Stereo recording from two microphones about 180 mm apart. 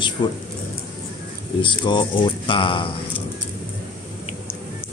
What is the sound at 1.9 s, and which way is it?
A man's voice, 25° left (ahead or behind).